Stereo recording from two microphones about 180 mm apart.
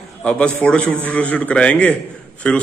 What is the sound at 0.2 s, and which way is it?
A man's voice, 5° left (ahead or behind).